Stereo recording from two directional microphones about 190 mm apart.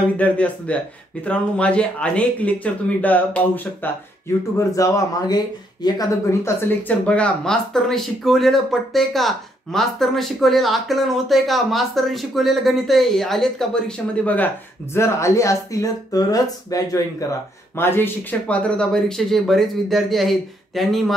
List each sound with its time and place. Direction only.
0.2 s speech: 5° left (ahead or behind)
6.8 s speech: 5° left (ahead or behind)